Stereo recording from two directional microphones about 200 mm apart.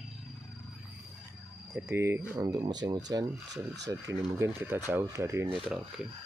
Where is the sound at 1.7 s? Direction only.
10° right (ahead or behind).